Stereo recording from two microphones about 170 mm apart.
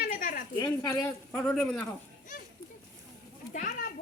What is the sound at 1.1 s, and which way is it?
Speech, 5° left (ahead or behind).